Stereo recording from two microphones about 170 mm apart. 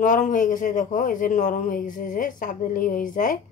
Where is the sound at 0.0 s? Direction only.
50° left (ahead or behind).